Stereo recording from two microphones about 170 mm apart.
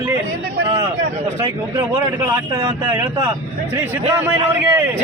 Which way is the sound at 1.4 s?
25° right (ahead or behind).